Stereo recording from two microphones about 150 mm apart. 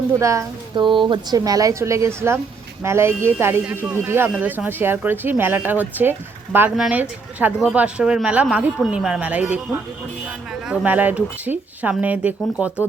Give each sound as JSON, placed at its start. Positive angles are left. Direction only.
{"t": 0.2, "sound": "a woman's voice", "side_deg": -20}
{"t": 0.8, "sound": "a woman's voice", "side_deg": -30}